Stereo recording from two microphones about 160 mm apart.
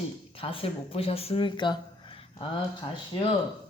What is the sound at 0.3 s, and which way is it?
Speech, 35° left (ahead or behind).